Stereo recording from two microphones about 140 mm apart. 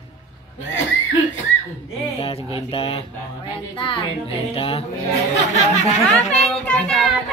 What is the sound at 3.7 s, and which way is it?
A child's voice, 35° left (ahead or behind).